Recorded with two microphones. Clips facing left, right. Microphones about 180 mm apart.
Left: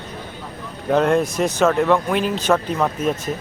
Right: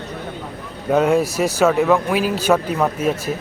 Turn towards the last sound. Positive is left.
turn(degrees=-5)  # may be behind; listen again after turning